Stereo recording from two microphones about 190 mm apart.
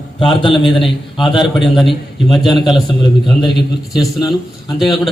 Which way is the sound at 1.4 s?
Centre (ahead or behind).